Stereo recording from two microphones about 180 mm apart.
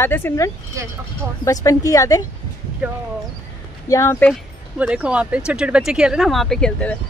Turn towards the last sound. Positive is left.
turn(degrees=5)  # may be behind; listen again after turning